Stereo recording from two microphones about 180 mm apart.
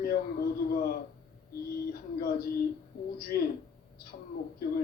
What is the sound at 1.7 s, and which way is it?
A woman's voice, 60° left (ahead or behind).